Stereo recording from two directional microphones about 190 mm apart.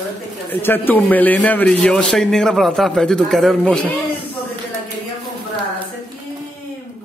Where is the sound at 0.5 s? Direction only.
10° left (ahead or behind).